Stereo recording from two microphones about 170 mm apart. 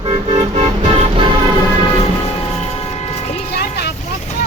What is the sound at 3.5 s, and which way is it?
Vehicle, 70° left (ahead or behind).